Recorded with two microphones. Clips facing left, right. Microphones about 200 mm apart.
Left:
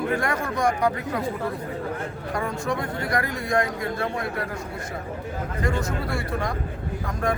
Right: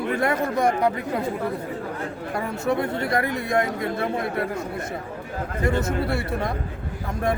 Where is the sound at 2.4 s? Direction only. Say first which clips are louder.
Right 3 dB; 25° right (ahead or behind).